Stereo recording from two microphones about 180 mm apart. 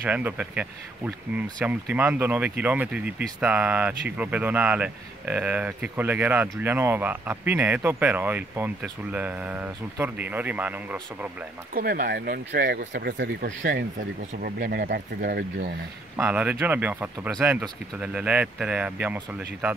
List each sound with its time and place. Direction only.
0.0 s speech: 10° right (ahead or behind)
11.7 s speech: 55° right (ahead or behind); by 13.7 s 75° right (ahead or behind)
14.4 s speech: 55° right (ahead or behind)
16.2 s speech: 10° right (ahead or behind)